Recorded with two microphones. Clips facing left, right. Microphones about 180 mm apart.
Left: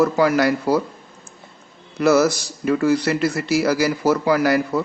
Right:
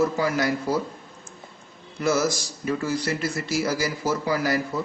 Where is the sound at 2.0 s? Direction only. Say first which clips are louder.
Left 7 dB; 65° left (ahead or behind).